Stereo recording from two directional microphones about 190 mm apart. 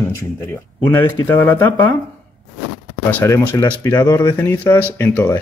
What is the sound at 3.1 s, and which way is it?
Speech, 10° left (ahead or behind).